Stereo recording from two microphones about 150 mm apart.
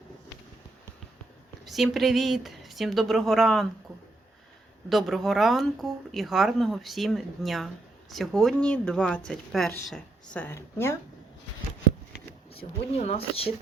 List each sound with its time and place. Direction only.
1.6 s speech: centre (ahead or behind)
4.9 s speech: centre (ahead or behind); by 10.9 s 15° left (ahead or behind)
13.0 s speech: 45° left (ahead or behind)